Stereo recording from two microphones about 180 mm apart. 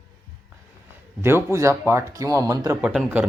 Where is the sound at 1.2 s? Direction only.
15° right (ahead or behind).